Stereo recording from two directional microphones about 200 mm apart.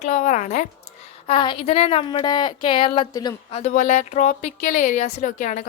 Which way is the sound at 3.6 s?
35° left (ahead or behind).